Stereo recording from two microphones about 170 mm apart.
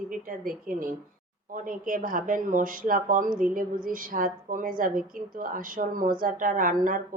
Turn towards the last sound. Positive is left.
turn(degrees=-50)  # may be behind; listen again after turning